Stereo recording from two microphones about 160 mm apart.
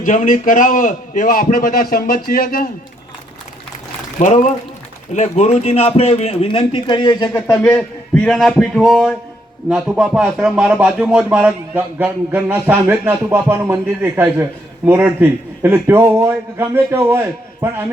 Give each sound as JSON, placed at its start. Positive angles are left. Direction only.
{"t": 0.0, "sound": "a man's voice", "side_deg": 55}
{"t": 4.2, "sound": "speech", "side_deg": 45}
{"t": 7.5, "sound": "a man's voice", "side_deg": 5}